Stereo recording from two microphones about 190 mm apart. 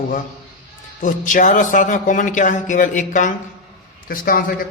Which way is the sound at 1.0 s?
45° left (ahead or behind).